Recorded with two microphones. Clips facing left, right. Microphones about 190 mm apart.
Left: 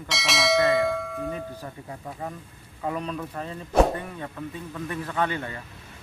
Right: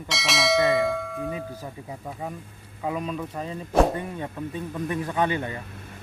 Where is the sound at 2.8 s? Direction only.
5° right (ahead or behind).